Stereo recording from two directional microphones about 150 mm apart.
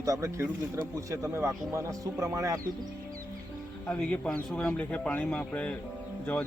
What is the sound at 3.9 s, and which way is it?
Speech, 5° left (ahead or behind).